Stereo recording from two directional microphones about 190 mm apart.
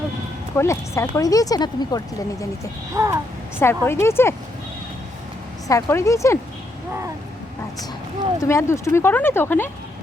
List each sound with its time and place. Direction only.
0.5 s speech: 15° left (ahead or behind)
2.9 s a child's voice: 15° right (ahead or behind)
3.6 s speech: 15° left (ahead or behind)
5.6 s speech: 15° left (ahead or behind)
8.4 s speech: 15° left (ahead or behind)